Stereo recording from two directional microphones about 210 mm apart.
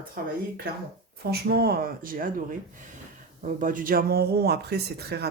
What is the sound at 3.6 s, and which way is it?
Speech, 40° right (ahead or behind).